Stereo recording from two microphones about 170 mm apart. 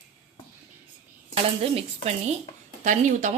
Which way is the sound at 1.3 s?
35° right (ahead or behind).